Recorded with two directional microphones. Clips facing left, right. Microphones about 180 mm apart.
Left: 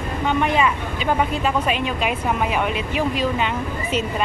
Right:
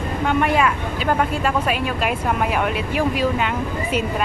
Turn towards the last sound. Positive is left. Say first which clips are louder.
# right 1 dB
turn(degrees=-5)  # may be behind; listen again after turning